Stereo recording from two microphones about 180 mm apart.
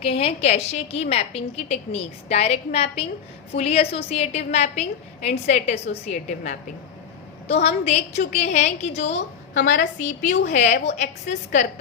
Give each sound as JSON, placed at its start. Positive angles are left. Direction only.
{"t": 0.0, "sound": "a woman's voice", "side_deg": 30}
{"t": 9.1, "sound": "a woman's voice", "side_deg": 85}
{"t": 10.0, "sound": "a woman's voice", "side_deg": 45}